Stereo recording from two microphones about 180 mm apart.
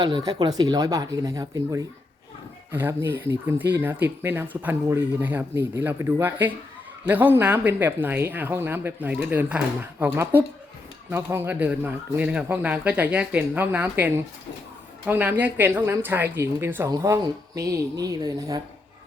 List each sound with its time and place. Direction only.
0.0 s speech: 20° right (ahead or behind)